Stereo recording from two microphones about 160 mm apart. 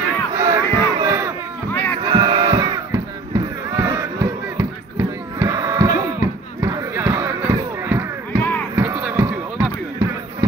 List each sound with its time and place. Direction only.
0.3 s battle cry: 20° right (ahead or behind)
1.7 s music: 15° left (ahead or behind)
2.0 s crowd: 30° right (ahead or behind)
8.3 s a sound: 10° left (ahead or behind)
8.7 s music: 20° right (ahead or behind)